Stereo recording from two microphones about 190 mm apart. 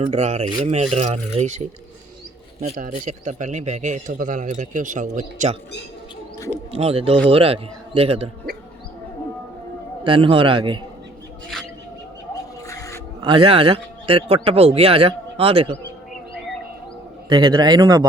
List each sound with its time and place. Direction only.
0.0 s a man's voice: 35° right (ahead or behind)
6.7 s a man's voice: 30° right (ahead or behind)
10.0 s speech: 30° right (ahead or behind)
11.5 s bird: centre (ahead or behind)
12.6 s a sound: 15° left (ahead or behind)
13.2 s speech: 25° right (ahead or behind)
17.2 s speech: 25° right (ahead or behind)